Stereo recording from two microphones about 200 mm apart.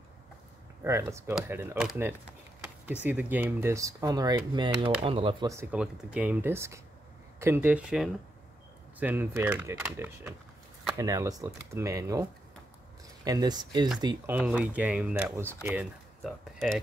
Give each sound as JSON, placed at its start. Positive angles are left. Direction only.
{"t": 0.8, "sound": "speech", "side_deg": -15}
{"t": 5.5, "sound": "speech", "side_deg": -10}
{"t": 14.0, "sound": "speech", "side_deg": -10}